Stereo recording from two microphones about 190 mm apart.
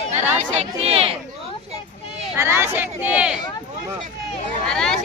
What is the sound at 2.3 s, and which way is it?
Speech, 15° right (ahead or behind).